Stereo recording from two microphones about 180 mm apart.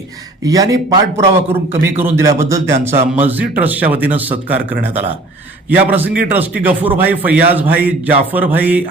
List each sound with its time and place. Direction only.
0.4 s speech: 20° right (ahead or behind)